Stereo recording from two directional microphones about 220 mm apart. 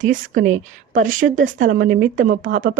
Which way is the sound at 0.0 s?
35° right (ahead or behind).